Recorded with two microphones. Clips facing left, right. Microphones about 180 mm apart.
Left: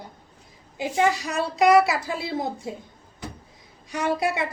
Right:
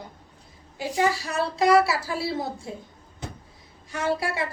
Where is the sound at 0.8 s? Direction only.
20° left (ahead or behind).